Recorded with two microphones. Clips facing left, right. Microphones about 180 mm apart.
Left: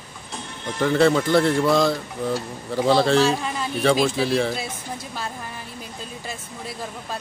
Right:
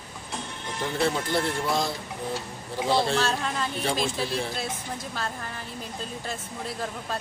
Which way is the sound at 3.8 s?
80° left.